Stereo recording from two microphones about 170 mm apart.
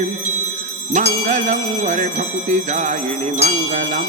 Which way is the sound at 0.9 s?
45° right (ahead or behind).